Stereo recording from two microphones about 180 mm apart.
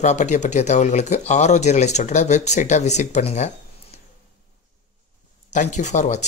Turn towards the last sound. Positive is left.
turn(degrees=40)  # may be behind; listen again after turning